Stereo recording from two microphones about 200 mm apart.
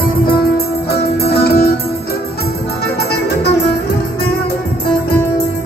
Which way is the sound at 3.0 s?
55° left (ahead or behind).